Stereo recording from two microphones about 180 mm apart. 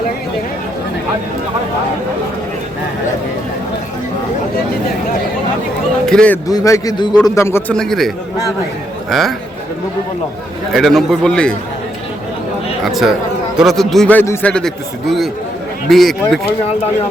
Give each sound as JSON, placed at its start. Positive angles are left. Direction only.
{"t": 6.1, "sound": "a man's voice", "side_deg": 5}
{"t": 6.5, "sound": "a man's voice", "side_deg": 20}
{"t": 10.7, "sound": "a man's voice", "side_deg": 0}
{"t": 12.8, "sound": "a man's voice", "side_deg": 0}
{"t": 15.9, "sound": "a man's voice", "side_deg": 0}